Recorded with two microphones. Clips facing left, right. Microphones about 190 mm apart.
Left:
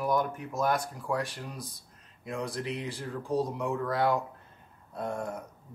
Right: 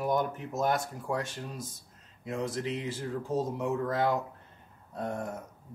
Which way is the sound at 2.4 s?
20° right (ahead or behind).